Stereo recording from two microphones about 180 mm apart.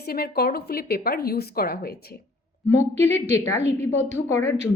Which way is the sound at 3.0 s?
40° right (ahead or behind).